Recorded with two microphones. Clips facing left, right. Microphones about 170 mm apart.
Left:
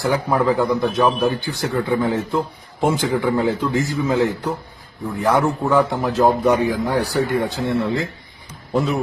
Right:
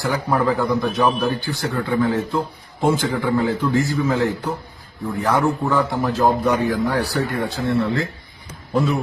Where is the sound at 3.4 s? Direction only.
20° left (ahead or behind).